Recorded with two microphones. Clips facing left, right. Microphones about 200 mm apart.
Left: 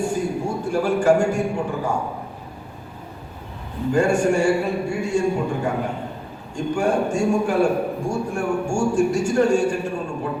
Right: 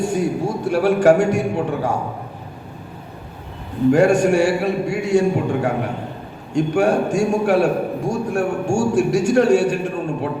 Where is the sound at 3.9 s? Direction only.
70° right (ahead or behind).